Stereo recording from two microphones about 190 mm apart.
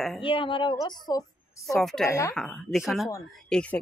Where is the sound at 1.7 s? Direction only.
Centre (ahead or behind).